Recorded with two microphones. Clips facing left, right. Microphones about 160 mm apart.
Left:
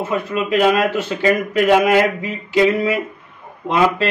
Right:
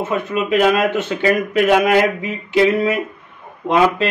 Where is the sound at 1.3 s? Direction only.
Centre (ahead or behind).